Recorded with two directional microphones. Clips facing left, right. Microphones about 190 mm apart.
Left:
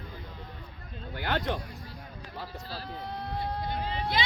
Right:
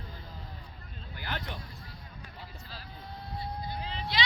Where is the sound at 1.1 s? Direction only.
70° left (ahead or behind).